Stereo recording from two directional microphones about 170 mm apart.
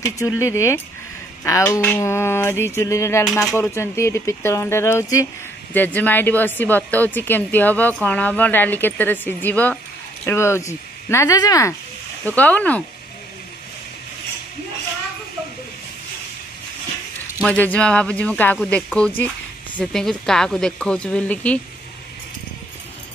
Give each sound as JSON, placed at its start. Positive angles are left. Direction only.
{"t": 0.4, "sound": "speech", "side_deg": 15}
{"t": 12.3, "sound": "speech", "side_deg": 10}
{"t": 17.4, "sound": "speech", "side_deg": 10}